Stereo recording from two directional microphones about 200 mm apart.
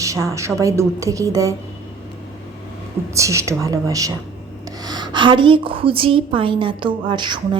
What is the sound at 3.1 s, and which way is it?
A woman's voice, 15° right (ahead or behind).